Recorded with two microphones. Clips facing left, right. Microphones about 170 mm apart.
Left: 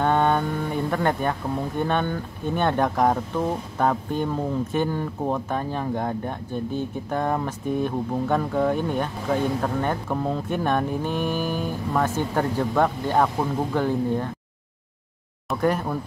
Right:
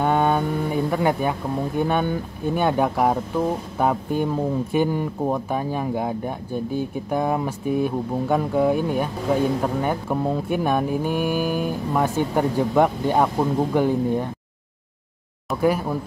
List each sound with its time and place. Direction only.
0.0 s a sound: 10° right (ahead or behind)
1.8 s speech: 10° right (ahead or behind)
15.5 s speech: 5° right (ahead or behind)